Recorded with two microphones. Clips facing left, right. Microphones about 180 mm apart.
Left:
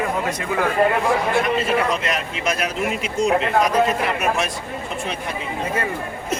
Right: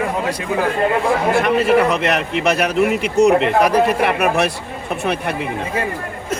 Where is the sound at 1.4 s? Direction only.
65° right (ahead or behind).